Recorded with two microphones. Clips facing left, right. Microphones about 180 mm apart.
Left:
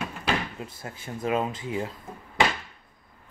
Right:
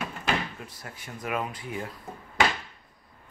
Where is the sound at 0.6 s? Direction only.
25° left (ahead or behind).